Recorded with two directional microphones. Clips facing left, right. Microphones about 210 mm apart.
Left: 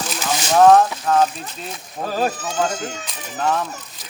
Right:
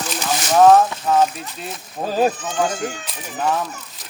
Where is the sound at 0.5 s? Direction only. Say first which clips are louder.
Even; 5° right (ahead or behind).